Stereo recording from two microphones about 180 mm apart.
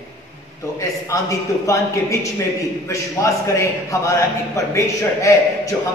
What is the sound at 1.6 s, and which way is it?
A man's voice, 15° left (ahead or behind).